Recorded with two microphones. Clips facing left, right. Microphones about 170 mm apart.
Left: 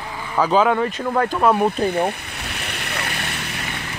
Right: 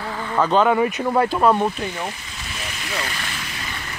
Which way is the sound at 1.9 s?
60° left (ahead or behind).